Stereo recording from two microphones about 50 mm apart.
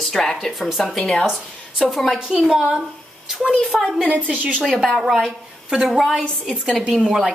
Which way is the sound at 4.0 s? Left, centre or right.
Left.